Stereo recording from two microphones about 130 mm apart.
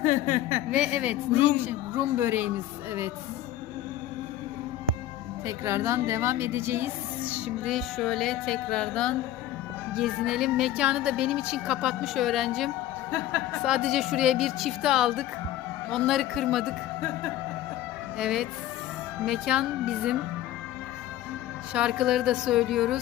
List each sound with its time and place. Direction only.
0.0 s a woman's voice: 80° left
0.7 s speech: 5° right (ahead or behind)
5.5 s a woman's voice: 20° right (ahead or behind); by 16.7 s centre (ahead or behind)
18.2 s a woman's voice: 5° right (ahead or behind)
21.7 s a woman's voice: 5° right (ahead or behind)